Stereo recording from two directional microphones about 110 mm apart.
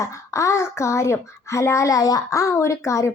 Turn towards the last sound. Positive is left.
turn(degrees=25)  # may be behind; listen again after turning